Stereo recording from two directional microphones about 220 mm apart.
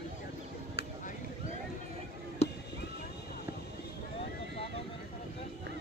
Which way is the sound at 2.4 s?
30° left (ahead or behind).